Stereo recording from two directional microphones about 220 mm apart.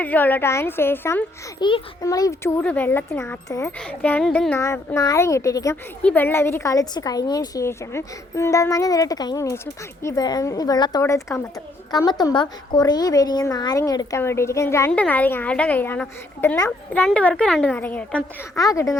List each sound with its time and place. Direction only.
0.0 s a child's voice: 10° left (ahead or behind)